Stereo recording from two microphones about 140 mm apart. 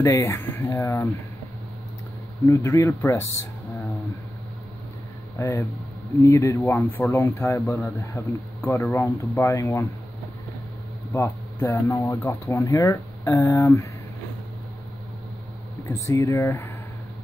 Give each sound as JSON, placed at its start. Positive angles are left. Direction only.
{"t": 0.0, "sound": "speech", "side_deg": 20}
{"t": 2.4, "sound": "speech", "side_deg": 20}
{"t": 5.4, "sound": "speech", "side_deg": 15}
{"t": 11.1, "sound": "speech", "side_deg": 20}
{"t": 15.9, "sound": "speech", "side_deg": 20}